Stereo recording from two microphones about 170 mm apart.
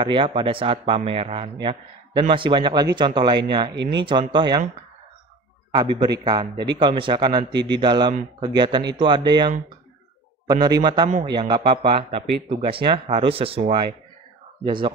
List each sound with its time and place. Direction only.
0.0 s a man's voice: 30° right (ahead or behind)
5.7 s a man's voice: 25° right (ahead or behind)
10.5 s a man's voice: 25° right (ahead or behind)